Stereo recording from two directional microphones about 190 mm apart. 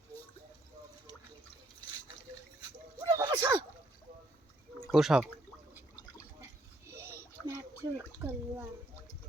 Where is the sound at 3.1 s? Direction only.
15° right (ahead or behind).